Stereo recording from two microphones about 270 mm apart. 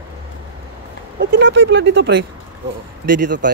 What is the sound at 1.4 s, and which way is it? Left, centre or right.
Speech, right.